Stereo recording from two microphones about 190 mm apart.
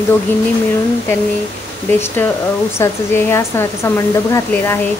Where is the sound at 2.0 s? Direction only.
10° left (ahead or behind).